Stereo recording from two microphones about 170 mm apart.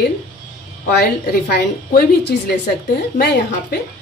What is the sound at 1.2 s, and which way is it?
A woman's voice, 60° left (ahead or behind).